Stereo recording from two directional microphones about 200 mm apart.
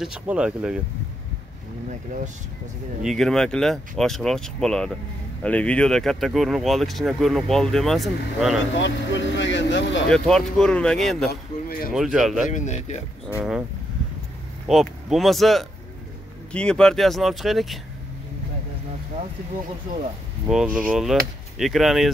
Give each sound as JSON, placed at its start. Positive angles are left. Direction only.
{"t": 0.0, "sound": "speech", "side_deg": -5}
{"t": 3.0, "sound": "speech", "side_deg": 0}
{"t": 8.7, "sound": "speech", "side_deg": 65}
{"t": 10.0, "sound": "speech", "side_deg": 5}
{"t": 12.4, "sound": "speech", "side_deg": 35}
{"t": 13.4, "sound": "speech", "side_deg": -5}
{"t": 14.7, "sound": "speech", "side_deg": 0}
{"t": 20.4, "sound": "speech", "side_deg": -5}